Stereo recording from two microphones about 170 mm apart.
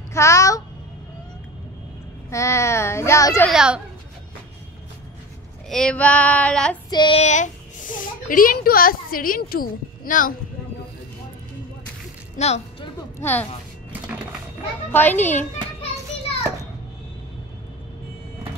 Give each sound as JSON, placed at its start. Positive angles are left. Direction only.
{"t": 0.1, "sound": "a sound", "side_deg": 15}
{"t": 2.3, "sound": "female singing", "side_deg": 15}
{"t": 3.4, "sound": "a child's voice", "side_deg": -5}
{"t": 5.7, "sound": "female singing", "side_deg": 5}
{"t": 6.9, "sound": "child singing", "side_deg": 25}
{"t": 7.2, "sound": "a child's voice", "side_deg": 45}
{"t": 12.4, "sound": "speech", "side_deg": 40}
{"t": 13.2, "sound": "female singing", "side_deg": 10}
{"t": 14.9, "sound": "female singing", "side_deg": 10}